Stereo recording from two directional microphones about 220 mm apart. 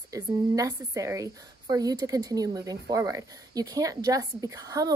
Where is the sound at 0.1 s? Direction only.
15° right (ahead or behind).